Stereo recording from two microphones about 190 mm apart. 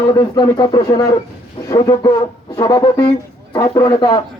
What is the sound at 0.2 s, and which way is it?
A man's voice, 20° left (ahead or behind).